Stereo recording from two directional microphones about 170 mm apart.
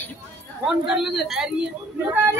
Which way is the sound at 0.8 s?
5° right (ahead or behind).